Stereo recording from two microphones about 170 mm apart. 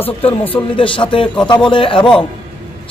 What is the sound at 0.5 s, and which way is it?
A man's voice, 30° left (ahead or behind).